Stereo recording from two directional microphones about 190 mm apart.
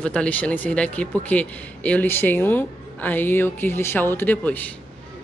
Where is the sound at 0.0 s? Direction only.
5° left (ahead or behind).